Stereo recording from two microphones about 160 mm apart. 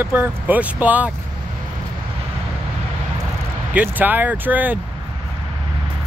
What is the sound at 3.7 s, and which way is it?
Speech, 10° right (ahead or behind).